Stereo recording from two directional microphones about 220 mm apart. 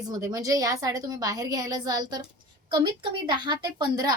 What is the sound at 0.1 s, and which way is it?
A woman's voice, 15° right (ahead or behind).